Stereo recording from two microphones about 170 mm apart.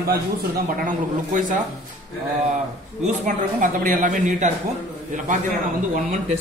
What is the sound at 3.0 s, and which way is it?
A man's voice, 50° right (ahead or behind).